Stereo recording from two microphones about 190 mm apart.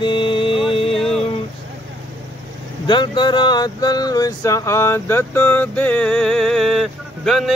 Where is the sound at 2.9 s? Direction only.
25° left (ahead or behind).